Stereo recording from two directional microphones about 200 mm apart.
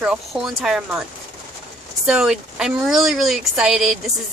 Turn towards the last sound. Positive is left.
turn(degrees=0)  # may be behind; listen again after turning